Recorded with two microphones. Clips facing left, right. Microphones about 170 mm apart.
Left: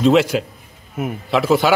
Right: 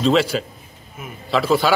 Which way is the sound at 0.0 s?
15° left (ahead or behind).